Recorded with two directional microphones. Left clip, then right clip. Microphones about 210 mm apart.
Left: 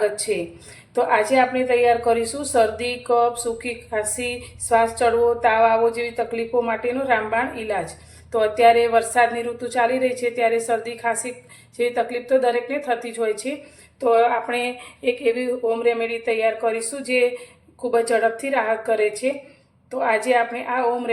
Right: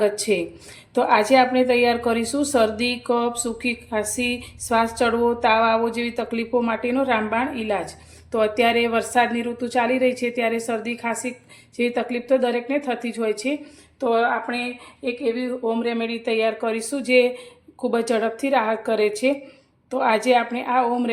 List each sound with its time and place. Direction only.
0.3 s a woman's voice: 45° right (ahead or behind)
14.0 s speech: 25° right (ahead or behind)